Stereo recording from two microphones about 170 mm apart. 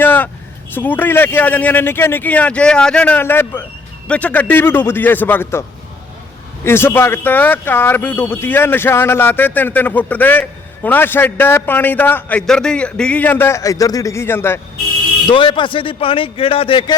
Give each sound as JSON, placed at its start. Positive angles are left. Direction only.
{"t": 0.0, "sound": "vehicle", "side_deg": 10}
{"t": 0.7, "sound": "speech", "side_deg": 10}
{"t": 6.7, "sound": "speech", "side_deg": 15}
{"t": 15.3, "sound": "speech", "side_deg": 30}